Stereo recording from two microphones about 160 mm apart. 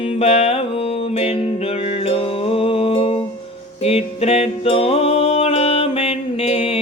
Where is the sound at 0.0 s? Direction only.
35° left (ahead or behind).